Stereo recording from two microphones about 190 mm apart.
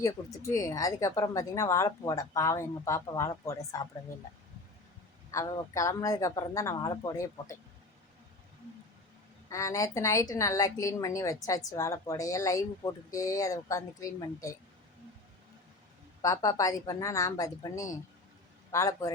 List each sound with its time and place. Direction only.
0.0 s speech: 15° left (ahead or behind)
5.3 s speech: 15° left (ahead or behind)
9.5 s speech: 15° left (ahead or behind)
16.2 s speech: 20° left (ahead or behind)